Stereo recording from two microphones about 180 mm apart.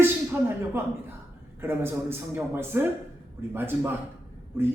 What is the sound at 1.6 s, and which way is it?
A man's voice, 15° right (ahead or behind).